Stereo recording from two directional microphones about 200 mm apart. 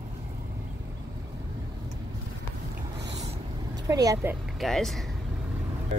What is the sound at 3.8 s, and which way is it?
Speech, 15° right (ahead or behind).